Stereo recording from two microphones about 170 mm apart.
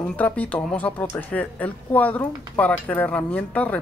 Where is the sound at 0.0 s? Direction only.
10° left (ahead or behind).